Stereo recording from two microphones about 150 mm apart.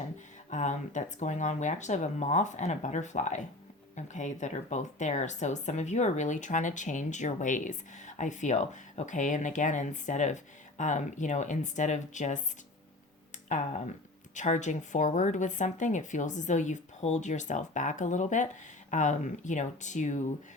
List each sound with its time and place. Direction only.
0.5 s speech: 55° left (ahead or behind)